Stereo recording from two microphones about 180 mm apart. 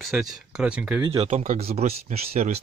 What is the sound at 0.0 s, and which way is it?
Speech, centre (ahead or behind).